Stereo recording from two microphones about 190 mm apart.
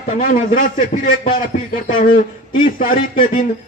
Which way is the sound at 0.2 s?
45° left (ahead or behind).